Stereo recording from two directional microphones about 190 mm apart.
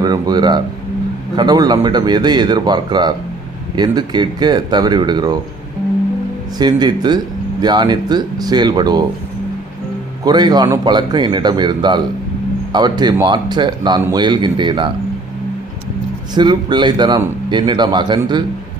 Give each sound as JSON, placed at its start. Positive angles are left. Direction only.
{"t": 0.0, "sound": "speech", "side_deg": -20}
{"t": 6.6, "sound": "speech", "side_deg": -20}
{"t": 10.2, "sound": "speech", "side_deg": -20}
{"t": 16.3, "sound": "speech", "side_deg": -25}